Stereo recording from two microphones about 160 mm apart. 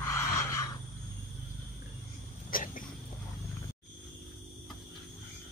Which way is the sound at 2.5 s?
60° left (ahead or behind).